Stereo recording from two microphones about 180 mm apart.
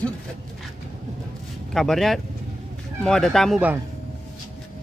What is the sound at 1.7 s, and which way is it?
Speech, centre (ahead or behind).